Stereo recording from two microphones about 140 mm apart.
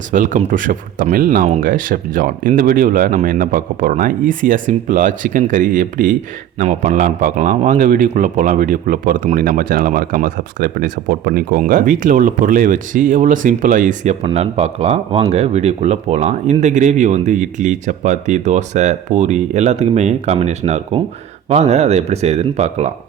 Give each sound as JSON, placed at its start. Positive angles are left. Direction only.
{"t": 0.1, "sound": "a man's voice", "side_deg": -65}
{"t": 1.6, "sound": "a man's voice", "side_deg": -75}
{"t": 6.6, "sound": "a man's voice", "side_deg": -60}
{"t": 14.3, "sound": "speech", "side_deg": -45}